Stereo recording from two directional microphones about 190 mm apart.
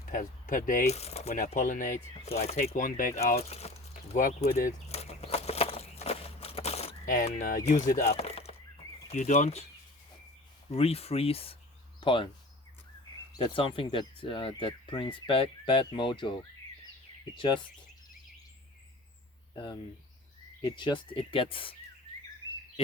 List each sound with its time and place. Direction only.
0.1 s speech: 45° left (ahead or behind)
3.5 s a sound: 35° left (ahead or behind)
7.3 s speech: 40° left (ahead or behind)
8.1 s a sound: 30° left (ahead or behind)
9.0 s speech: 35° left (ahead or behind)
10.7 s speech: 30° left (ahead or behind)
13.3 s speech: 25° left (ahead or behind)
17.3 s speech: 25° left (ahead or behind)
20.6 s speech: 25° left (ahead or behind)